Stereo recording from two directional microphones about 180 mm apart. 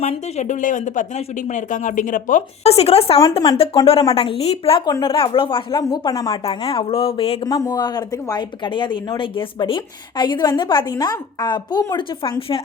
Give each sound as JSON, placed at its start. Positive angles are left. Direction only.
{"t": 0.0, "sound": "speech", "side_deg": 40}
{"t": 3.3, "sound": "speech", "side_deg": 20}
{"t": 3.6, "sound": "speech", "side_deg": 30}
{"t": 6.4, "sound": "speech", "side_deg": 30}
{"t": 7.4, "sound": "speech", "side_deg": 20}